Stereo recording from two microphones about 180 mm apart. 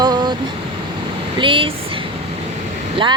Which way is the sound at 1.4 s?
30° right (ahead or behind).